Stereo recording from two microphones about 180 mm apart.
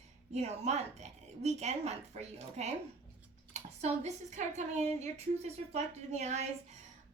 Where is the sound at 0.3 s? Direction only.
40° right (ahead or behind).